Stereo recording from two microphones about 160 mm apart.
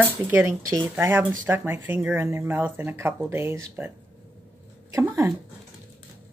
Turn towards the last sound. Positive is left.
turn(degrees=-15)  # may be behind; listen again after turning